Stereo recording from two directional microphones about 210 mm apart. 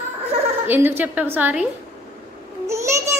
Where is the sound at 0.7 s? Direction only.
10° right (ahead or behind).